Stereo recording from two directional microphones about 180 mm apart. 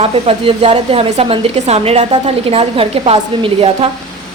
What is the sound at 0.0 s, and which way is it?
A woman's voice, 30° right (ahead or behind).